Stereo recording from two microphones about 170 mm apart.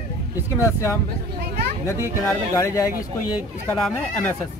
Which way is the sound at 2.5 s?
20° left (ahead or behind).